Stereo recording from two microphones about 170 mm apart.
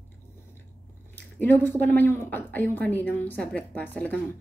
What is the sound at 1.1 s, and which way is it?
Speech, 10° left (ahead or behind).